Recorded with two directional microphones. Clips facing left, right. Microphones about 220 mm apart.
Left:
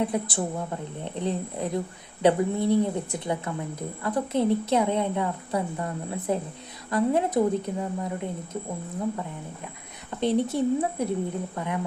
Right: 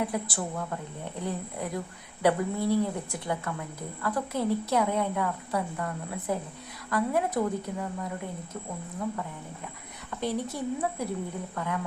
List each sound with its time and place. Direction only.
0.0 s speech: 20° left (ahead or behind)
10.1 s speech: 25° left (ahead or behind)